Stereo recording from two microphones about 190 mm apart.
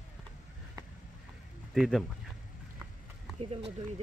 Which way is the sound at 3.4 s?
30° right (ahead or behind).